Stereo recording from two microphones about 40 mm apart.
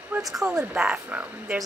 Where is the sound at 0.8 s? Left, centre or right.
Right.